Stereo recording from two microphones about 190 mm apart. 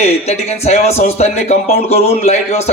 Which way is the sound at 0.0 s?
35° left (ahead or behind).